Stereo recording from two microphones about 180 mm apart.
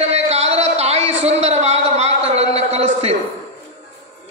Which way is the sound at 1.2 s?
35° right (ahead or behind).